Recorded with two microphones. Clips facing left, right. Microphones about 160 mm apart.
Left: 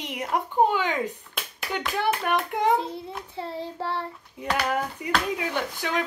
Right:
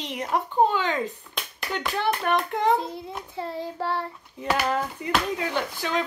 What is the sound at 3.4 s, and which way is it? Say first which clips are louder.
Child singing: right 2 dB; 30° left (ahead or behind).